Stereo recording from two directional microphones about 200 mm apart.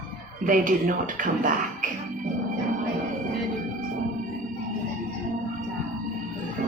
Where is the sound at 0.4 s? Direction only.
40° right (ahead or behind).